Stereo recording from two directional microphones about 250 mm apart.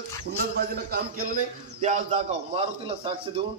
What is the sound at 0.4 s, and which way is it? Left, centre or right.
A man's voice, right.